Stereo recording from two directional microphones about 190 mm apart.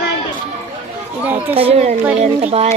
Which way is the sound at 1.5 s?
30° right (ahead or behind).